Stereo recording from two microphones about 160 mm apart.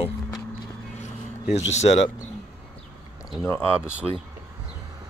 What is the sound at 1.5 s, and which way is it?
Speech, 45° left (ahead or behind).